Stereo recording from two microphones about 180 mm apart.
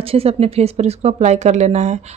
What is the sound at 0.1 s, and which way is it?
A woman's voice, 35° right (ahead or behind).